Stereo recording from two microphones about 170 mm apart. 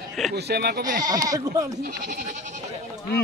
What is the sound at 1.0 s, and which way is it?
Speech, 20° right (ahead or behind).